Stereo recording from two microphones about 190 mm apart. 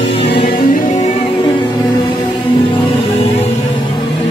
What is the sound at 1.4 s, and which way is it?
Music, 20° left (ahead or behind).